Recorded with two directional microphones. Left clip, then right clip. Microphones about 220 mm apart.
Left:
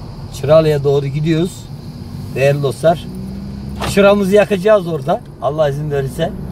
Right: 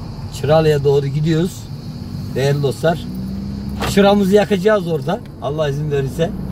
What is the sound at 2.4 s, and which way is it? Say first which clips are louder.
Speech: left 5 dB; 25° left (ahead or behind).